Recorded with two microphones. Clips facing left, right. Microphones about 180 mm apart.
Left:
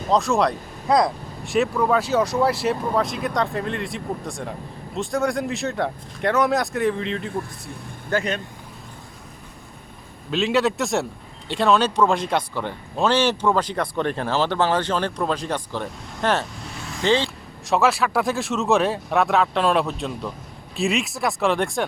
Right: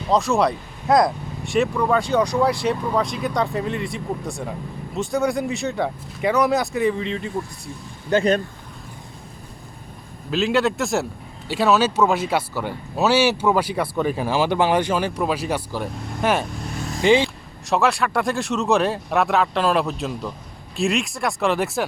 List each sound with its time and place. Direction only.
0.1 s speech: centre (ahead or behind)
8.1 s speech: 15° right (ahead or behind)
10.3 s speech: centre (ahead or behind)
17.2 s speech: centre (ahead or behind)